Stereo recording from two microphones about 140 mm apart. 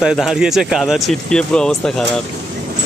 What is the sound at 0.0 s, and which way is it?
Speech, 5° right (ahead or behind).